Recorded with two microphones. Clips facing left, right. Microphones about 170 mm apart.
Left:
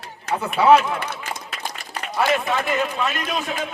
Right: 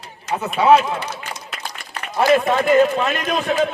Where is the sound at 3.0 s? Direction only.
45° right (ahead or behind).